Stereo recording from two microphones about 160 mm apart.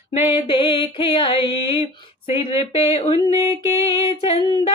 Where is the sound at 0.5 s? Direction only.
35° left (ahead or behind).